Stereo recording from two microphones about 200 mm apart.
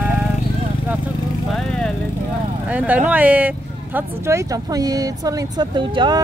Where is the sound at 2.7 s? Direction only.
5° right (ahead or behind).